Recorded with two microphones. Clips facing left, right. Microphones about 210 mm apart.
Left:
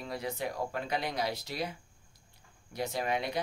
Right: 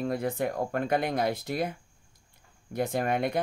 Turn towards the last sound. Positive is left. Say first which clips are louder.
# right 5 dB
turn(degrees=-55)  # may be behind; listen again after turning